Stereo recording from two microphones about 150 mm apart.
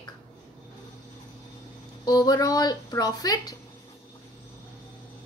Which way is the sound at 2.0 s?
25° left (ahead or behind).